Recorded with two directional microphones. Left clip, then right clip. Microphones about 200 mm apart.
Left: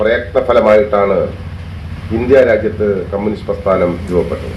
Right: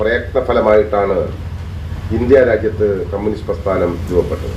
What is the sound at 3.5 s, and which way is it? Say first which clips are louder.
Speech: left 2 dB; 35° left (ahead or behind).